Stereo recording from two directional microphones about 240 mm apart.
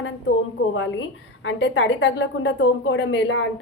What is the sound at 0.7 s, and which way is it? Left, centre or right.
A woman's voice, left.